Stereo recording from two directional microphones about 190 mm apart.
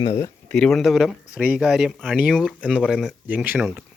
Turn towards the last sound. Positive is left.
turn(degrees=-5)  # may be behind; listen again after turning